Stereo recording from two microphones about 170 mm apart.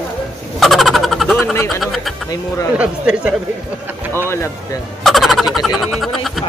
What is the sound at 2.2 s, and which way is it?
Speech, 20° left (ahead or behind).